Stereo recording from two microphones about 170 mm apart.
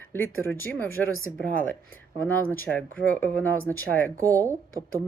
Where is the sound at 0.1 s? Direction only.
15° left (ahead or behind).